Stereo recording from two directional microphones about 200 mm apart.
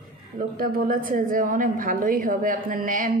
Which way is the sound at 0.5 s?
45° right (ahead or behind).